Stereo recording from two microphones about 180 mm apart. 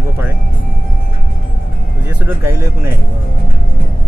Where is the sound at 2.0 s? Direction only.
10° right (ahead or behind).